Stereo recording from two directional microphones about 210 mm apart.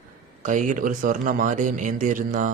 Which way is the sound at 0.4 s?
35° right (ahead or behind).